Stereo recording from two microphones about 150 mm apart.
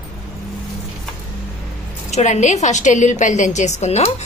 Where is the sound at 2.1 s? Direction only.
50° left (ahead or behind).